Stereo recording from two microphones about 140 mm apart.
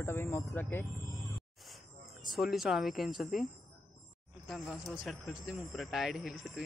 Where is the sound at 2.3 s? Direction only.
Centre (ahead or behind).